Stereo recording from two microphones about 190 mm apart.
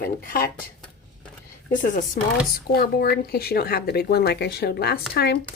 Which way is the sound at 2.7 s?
55° left (ahead or behind).